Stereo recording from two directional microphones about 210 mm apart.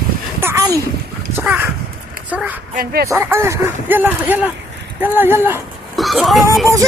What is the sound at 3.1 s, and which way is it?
Speech, 10° right (ahead or behind).